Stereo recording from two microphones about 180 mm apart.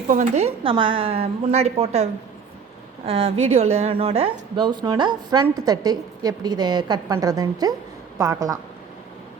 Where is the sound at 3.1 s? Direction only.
35° right (ahead or behind); by 8.5 s 20° right (ahead or behind).